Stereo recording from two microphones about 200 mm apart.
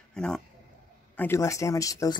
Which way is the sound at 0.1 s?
5° left (ahead or behind).